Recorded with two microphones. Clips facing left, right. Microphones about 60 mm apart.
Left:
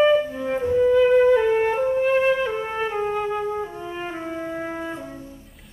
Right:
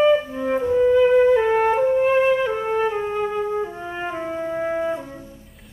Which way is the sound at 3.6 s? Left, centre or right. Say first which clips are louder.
Right 2 dB; centre.